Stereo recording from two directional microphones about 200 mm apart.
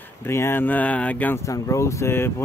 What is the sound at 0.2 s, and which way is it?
Speech, 10° left (ahead or behind).